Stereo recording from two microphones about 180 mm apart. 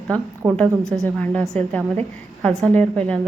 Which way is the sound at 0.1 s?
5° left (ahead or behind).